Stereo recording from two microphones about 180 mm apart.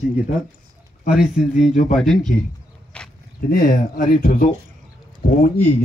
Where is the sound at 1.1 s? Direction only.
5° right (ahead or behind).